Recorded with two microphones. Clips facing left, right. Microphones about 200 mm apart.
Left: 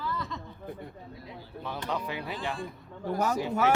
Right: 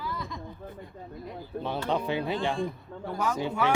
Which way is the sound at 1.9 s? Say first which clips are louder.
Right 6 dB; 25° right (ahead or behind).